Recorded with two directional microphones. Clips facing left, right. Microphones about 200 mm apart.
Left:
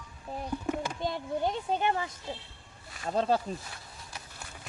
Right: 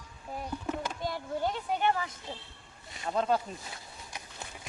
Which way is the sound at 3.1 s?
30° left (ahead or behind).